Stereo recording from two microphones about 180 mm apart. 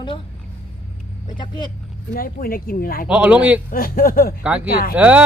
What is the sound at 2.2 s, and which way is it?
Speech, 55° left (ahead or behind).